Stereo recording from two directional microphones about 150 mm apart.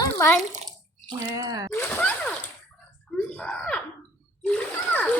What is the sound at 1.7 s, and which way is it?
Speech, 10° left (ahead or behind).